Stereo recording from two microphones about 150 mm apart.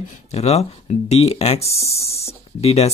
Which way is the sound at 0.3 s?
45° left (ahead or behind).